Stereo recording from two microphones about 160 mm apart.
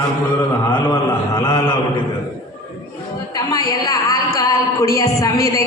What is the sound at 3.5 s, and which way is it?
Speech, 25° left (ahead or behind).